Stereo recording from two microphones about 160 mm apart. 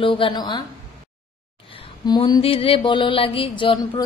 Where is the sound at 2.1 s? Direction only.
30° left (ahead or behind).